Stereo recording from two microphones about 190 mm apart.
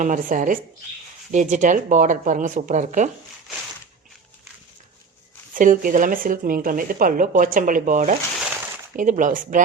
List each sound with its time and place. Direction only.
0.0 s speech: 45° right (ahead or behind)
5.5 s speech: 45° right (ahead or behind)